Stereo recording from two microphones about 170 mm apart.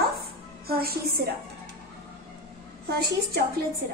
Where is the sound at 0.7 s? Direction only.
65° right (ahead or behind).